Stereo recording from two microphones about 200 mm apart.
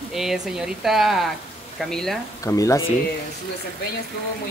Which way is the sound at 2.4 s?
15° left (ahead or behind).